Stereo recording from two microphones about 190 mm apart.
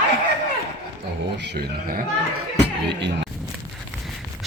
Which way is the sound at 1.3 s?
60° right (ahead or behind).